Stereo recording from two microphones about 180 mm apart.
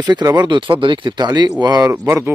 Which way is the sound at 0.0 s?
20° right (ahead or behind).